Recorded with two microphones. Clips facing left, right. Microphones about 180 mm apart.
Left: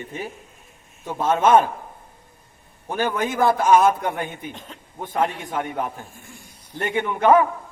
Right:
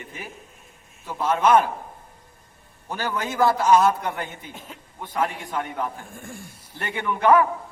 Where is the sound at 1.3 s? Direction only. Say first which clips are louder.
Left 2 dB; 25° left (ahead or behind).